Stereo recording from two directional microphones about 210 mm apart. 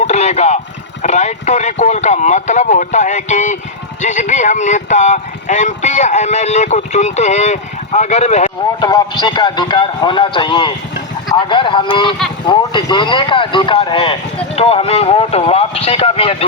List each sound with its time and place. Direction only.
0.0 s a sound: 30° left (ahead or behind)
1.0 s speech: 30° left (ahead or behind)
8.8 s speech: 20° left (ahead or behind)